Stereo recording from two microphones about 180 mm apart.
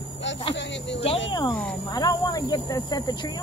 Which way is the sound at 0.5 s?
90° left.